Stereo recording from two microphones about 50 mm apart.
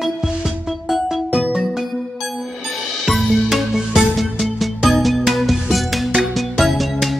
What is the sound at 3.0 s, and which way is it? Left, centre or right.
Music, centre.